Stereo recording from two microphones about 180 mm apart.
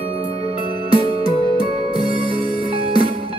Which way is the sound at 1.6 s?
55° left (ahead or behind).